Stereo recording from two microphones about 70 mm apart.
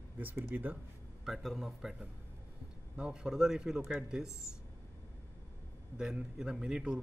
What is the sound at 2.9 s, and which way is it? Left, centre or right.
A man's voice, centre.